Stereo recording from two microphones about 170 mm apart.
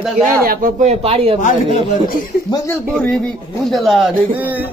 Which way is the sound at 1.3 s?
45° left (ahead or behind).